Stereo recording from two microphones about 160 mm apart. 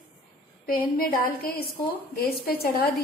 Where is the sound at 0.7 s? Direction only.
65° left (ahead or behind).